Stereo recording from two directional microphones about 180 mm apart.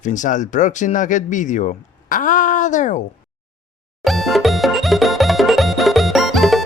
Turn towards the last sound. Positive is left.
turn(degrees=0)  # may be behind; listen again after turning